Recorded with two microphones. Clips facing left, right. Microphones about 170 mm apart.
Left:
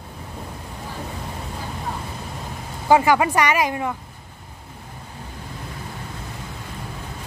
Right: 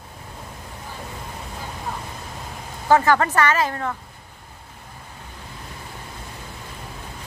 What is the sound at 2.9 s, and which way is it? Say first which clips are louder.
Speech: left 1 dB; 10° left (ahead or behind).